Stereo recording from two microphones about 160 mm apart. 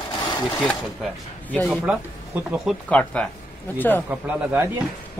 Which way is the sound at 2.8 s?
5° left (ahead or behind).